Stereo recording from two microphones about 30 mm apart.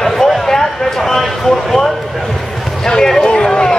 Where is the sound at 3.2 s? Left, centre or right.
Left.